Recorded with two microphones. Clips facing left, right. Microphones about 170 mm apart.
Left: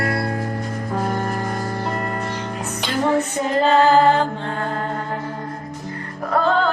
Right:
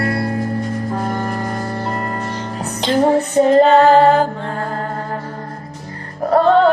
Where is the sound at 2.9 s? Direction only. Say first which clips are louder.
Right 6 dB; 35° right (ahead or behind).